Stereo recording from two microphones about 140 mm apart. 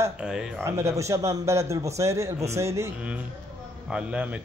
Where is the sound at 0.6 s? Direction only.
20° right (ahead or behind).